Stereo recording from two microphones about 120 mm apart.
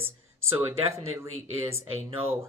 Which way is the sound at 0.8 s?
25° right (ahead or behind).